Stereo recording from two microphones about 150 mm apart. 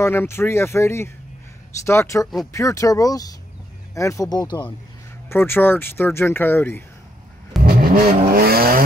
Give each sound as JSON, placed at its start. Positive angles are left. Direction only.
{"t": 0.0, "sound": "speech", "side_deg": 15}
{"t": 5.3, "sound": "speech", "side_deg": 15}
{"t": 7.6, "sound": "vehicle", "side_deg": -70}
{"t": 8.4, "sound": "vehicle", "side_deg": -90}